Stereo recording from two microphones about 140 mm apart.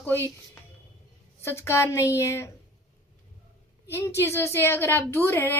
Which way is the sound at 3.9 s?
20° left (ahead or behind).